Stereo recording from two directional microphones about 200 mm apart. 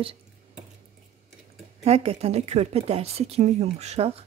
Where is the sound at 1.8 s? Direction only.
30° right (ahead or behind).